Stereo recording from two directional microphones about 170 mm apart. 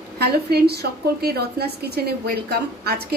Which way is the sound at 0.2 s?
70° right (ahead or behind).